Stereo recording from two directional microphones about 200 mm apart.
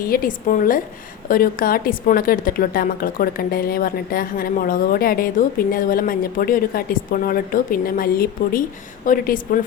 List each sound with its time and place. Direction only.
0.1 s a woman's voice: 45° left (ahead or behind)